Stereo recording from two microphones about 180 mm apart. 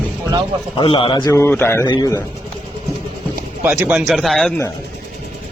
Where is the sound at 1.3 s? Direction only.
10° left (ahead or behind).